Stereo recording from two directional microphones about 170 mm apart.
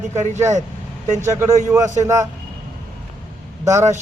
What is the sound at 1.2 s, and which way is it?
A man's voice, 15° right (ahead or behind).